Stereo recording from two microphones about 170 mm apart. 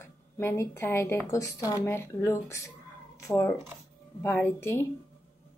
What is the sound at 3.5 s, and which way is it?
Speech, 15° right (ahead or behind).